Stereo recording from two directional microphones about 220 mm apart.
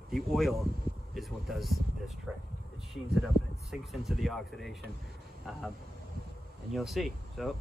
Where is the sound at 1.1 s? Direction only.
Centre (ahead or behind).